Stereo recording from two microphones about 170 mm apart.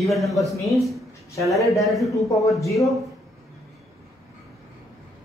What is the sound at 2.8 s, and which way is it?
Speech, centre (ahead or behind).